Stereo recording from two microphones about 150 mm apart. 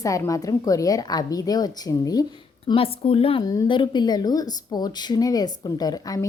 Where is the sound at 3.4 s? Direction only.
25° left (ahead or behind).